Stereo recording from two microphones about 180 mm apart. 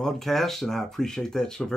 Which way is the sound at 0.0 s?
Centre (ahead or behind).